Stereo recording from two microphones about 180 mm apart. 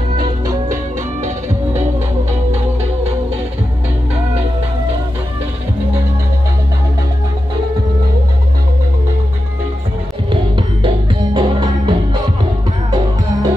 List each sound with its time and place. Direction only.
10.3 s music: 30° right (ahead or behind)